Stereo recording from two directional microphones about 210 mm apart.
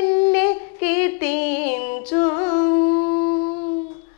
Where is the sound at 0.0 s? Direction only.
15° left (ahead or behind); by 3.3 s 30° left (ahead or behind).